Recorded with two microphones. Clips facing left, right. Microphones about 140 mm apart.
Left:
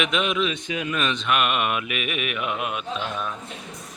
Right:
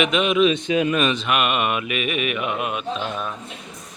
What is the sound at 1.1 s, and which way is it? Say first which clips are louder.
Mantra: right 2 dB; 5° right (ahead or behind).